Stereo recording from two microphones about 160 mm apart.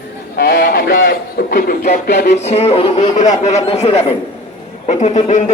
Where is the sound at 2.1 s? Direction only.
90° left.